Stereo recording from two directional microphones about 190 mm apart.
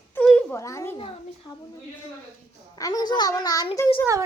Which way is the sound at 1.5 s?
20° left (ahead or behind).